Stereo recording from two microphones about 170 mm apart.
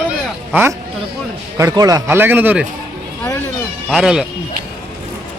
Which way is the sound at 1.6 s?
20° right (ahead or behind).